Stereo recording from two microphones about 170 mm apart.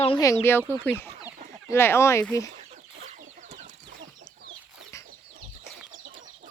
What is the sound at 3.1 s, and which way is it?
Chicken, 45° right (ahead or behind).